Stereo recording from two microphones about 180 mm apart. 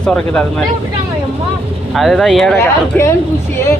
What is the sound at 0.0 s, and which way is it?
Speech, 5° left (ahead or behind).